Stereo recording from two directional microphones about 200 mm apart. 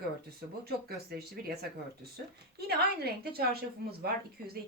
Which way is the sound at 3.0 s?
50° right (ahead or behind).